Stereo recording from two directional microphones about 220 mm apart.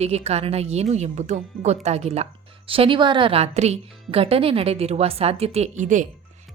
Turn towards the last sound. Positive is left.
turn(degrees=-35)  # may be behind; listen again after turning